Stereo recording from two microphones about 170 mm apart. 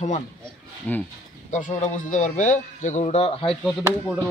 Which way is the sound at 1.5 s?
50° left (ahead or behind).